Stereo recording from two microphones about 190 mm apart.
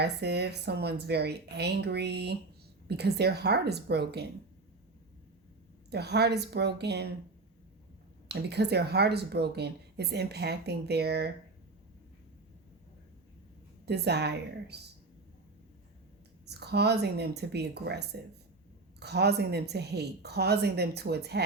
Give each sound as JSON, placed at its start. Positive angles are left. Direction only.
{"t": 0.0, "sound": "speech", "side_deg": -60}
{"t": 5.9, "sound": "speech", "side_deg": -60}
{"t": 8.3, "sound": "speech", "side_deg": -60}
{"t": 13.8, "sound": "speech", "side_deg": -60}
{"t": 16.5, "sound": "speech", "side_deg": -60}